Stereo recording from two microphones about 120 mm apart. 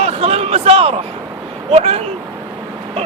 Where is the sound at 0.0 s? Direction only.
55° right (ahead or behind).